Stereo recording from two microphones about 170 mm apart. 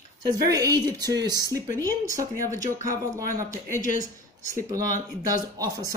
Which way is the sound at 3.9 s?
55° left (ahead or behind).